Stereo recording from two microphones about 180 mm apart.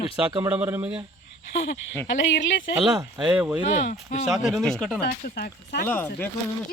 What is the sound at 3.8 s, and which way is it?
Speech, 40° left (ahead or behind).